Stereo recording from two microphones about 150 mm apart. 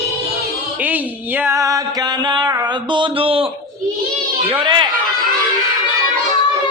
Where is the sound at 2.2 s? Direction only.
30° right (ahead or behind).